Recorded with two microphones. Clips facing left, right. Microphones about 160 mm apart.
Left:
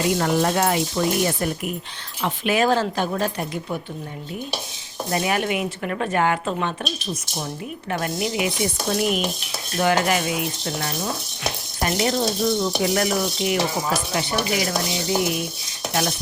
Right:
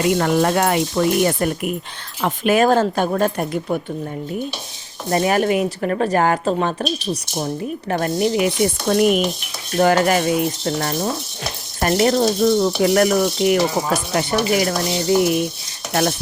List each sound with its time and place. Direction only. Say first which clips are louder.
0.1 s sizzle: right 4 dB; 65° right (ahead or behind)
2.2 s speech: right 5 dB; 50° right (ahead or behind)
5.1 s speech: right 6 dB; 40° right (ahead or behind)
8.9 s sizzle: right 7 dB; 55° right (ahead or behind)
9.7 s speech: right 5 dB; 45° right (ahead or behind)
11.8 s sizzle: right 6 dB; 50° right (ahead or behind)
14.1 s speech: right 5 dB; 50° right (ahead or behind)
15.9 s sizzle: right 5 dB; 55° right (ahead or behind)